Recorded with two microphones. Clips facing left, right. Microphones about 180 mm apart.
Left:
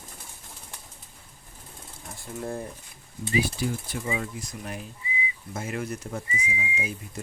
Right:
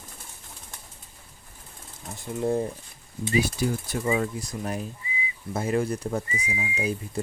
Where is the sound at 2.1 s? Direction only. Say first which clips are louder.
Right 8 dB; 20° right (ahead or behind).